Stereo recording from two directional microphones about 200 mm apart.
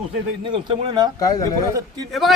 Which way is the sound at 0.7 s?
25° right (ahead or behind).